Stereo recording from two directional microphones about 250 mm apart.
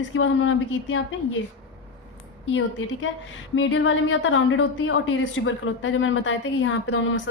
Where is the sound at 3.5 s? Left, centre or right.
Left.